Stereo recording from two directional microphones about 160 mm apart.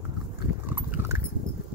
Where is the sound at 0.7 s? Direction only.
15° right (ahead or behind).